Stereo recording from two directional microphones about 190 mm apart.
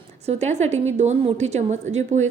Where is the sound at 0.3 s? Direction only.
35° right (ahead or behind).